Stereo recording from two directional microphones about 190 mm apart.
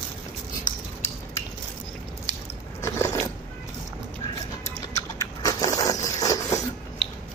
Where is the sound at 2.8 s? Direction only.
15° left (ahead or behind).